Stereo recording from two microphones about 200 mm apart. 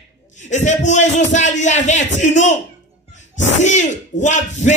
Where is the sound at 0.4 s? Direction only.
35° left (ahead or behind).